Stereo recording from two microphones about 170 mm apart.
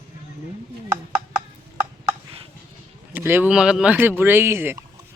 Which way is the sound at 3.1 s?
10° right (ahead or behind).